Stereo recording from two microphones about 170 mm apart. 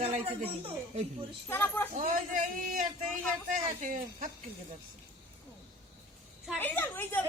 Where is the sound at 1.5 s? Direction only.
10° left (ahead or behind).